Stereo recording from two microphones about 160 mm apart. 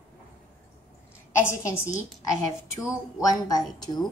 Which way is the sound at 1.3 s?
15° left (ahead or behind).